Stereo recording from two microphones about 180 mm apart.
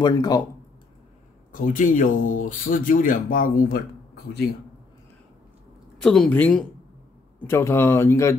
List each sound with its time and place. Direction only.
0.0 s speech: 20° left (ahead or behind)
1.5 s speech: 50° left (ahead or behind)
5.9 s speech: 5° left (ahead or behind)